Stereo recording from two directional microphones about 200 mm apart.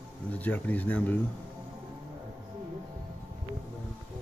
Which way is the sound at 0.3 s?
10° left (ahead or behind).